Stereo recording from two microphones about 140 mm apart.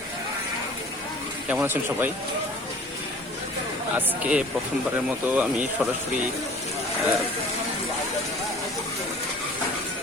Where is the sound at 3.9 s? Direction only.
10° right (ahead or behind).